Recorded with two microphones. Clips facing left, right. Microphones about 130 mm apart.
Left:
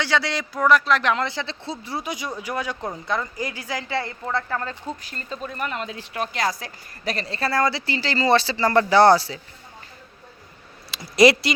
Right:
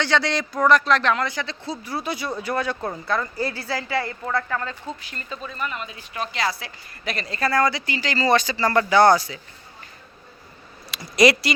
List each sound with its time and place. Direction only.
0.0 s speech: 5° left (ahead or behind)
1.1 s speech: 25° left (ahead or behind)
5.0 s speech: 40° left (ahead or behind)
5.5 s speech: 60° left (ahead or behind); by 6.2 s 90° left
6.3 s speech: 45° left (ahead or behind)
11.2 s speech: 25° left (ahead or behind)